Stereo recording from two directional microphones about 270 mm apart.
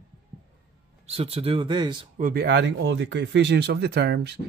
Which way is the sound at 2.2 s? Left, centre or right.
Right.